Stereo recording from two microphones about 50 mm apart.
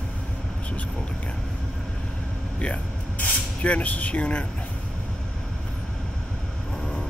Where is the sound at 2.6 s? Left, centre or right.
Left.